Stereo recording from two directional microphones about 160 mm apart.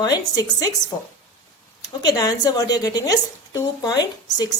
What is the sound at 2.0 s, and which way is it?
A woman's voice, 25° left (ahead or behind).